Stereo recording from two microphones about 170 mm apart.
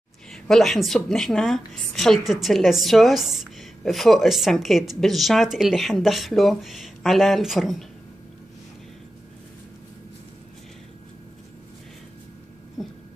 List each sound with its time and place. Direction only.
0.3 s a woman's voice: centre (ahead or behind)
12.8 s dog: centre (ahead or behind)